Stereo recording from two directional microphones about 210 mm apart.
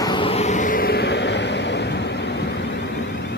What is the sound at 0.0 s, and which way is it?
Vehicle, 25° left (ahead or behind).